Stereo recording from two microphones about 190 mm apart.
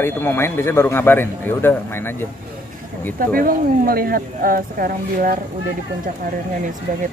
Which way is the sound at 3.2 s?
50° right (ahead or behind).